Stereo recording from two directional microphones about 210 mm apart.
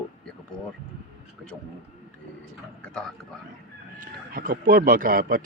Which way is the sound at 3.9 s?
40° right (ahead or behind).